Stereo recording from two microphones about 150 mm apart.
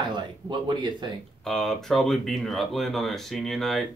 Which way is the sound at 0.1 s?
30° right (ahead or behind).